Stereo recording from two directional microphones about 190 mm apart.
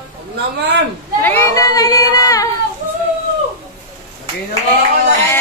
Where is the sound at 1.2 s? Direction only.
10° left (ahead or behind).